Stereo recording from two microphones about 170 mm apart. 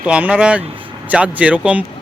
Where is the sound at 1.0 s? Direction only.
10° right (ahead or behind).